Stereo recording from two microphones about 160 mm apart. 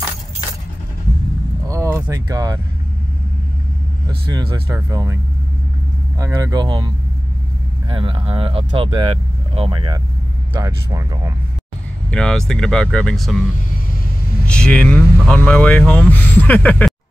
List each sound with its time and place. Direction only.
1.7 s a sound: 15° right (ahead or behind)
4.3 s speech: 25° right (ahead or behind)
7.9 s speech: 35° right (ahead or behind)
12.1 s speech: 5° left (ahead or behind)
14.5 s speech: 5° left (ahead or behind)